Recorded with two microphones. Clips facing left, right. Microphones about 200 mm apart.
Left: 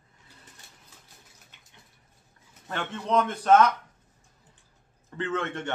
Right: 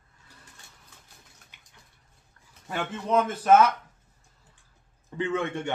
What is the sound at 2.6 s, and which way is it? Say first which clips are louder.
A man's voice: right 1 dB; 5° right (ahead or behind).